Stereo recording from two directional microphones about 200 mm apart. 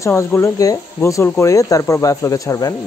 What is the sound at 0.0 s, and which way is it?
Speech, 15° left (ahead or behind).